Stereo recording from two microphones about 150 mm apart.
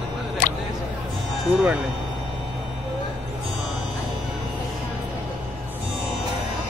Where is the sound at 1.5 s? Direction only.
10° right (ahead or behind).